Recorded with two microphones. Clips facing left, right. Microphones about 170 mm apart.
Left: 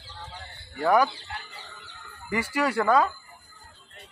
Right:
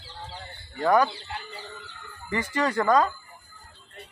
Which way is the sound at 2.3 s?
10° left (ahead or behind).